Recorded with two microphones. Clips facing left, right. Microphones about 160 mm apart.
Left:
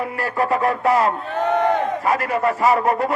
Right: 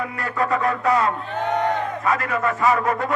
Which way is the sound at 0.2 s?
35° left (ahead or behind).